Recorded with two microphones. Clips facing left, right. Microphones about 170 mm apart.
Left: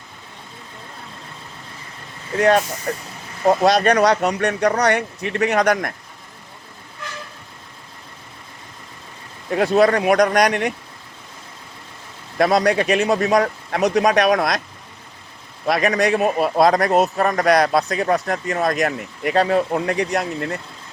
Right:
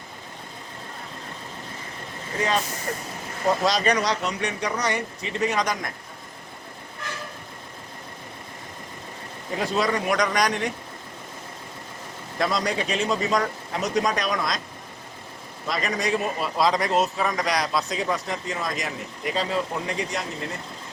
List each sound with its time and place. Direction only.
3.4 s speech: 60° left (ahead or behind)
9.6 s speech: 60° left (ahead or behind)
12.4 s speech: 65° left (ahead or behind)
15.6 s speech: 65° left (ahead or behind)